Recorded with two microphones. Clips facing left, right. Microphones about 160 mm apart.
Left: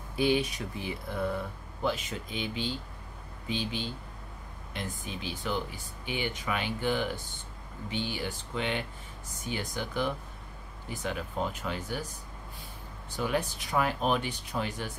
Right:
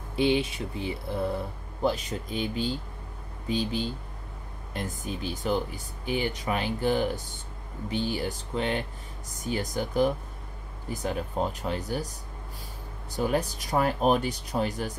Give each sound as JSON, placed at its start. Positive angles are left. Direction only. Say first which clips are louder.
{"t": 0.1, "sound": "speech", "louder": "right 2 dB", "side_deg": -25}
{"t": 13.1, "sound": "speech", "louder": "right 4 dB", "side_deg": -40}